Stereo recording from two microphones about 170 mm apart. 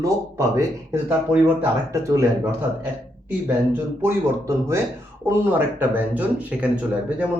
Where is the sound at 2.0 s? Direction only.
15° right (ahead or behind).